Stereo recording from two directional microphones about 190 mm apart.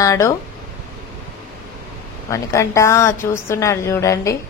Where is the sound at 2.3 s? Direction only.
15° left (ahead or behind).